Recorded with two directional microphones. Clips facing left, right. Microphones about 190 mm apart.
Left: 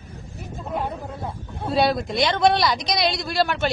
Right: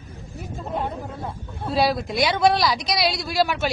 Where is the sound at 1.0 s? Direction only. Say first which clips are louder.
Even; 15° left (ahead or behind).